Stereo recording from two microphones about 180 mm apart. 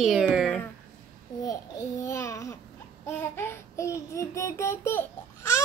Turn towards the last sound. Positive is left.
turn(degrees=15)  # may be behind; listen again after turning